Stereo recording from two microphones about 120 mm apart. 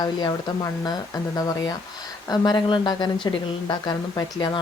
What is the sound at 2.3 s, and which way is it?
Speech, 35° left (ahead or behind).